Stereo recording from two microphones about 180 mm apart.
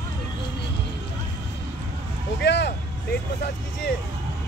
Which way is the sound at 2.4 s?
70° left (ahead or behind).